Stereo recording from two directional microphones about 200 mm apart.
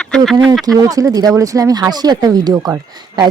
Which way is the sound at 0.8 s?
15° right (ahead or behind).